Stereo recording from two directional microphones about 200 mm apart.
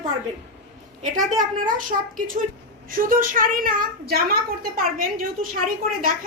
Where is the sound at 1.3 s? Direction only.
40° right (ahead or behind).